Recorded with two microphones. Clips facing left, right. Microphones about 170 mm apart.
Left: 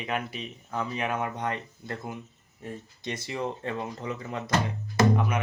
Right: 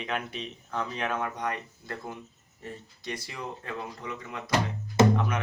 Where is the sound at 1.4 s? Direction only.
25° left (ahead or behind).